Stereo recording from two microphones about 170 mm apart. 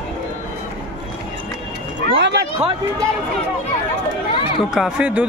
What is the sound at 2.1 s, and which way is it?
Speech, 90° right.